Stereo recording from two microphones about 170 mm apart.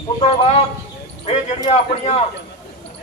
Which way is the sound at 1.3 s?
40° left (ahead or behind).